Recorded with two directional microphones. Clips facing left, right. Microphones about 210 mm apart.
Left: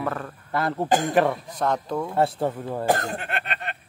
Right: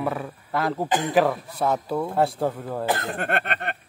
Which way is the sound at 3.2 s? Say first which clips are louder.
Right 5 dB; 55° right (ahead or behind).